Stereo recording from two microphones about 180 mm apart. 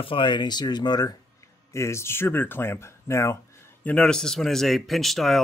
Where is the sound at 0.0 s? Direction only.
30° left (ahead or behind).